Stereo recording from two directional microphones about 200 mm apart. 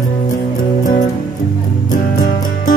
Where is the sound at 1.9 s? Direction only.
40° left (ahead or behind).